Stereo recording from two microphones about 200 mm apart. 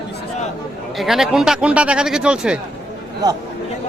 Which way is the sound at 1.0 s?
Centre (ahead or behind).